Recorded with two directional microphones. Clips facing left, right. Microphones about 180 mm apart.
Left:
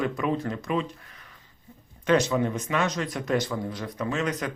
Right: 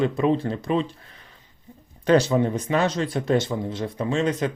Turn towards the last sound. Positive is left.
turn(degrees=-25)  # may be behind; listen again after turning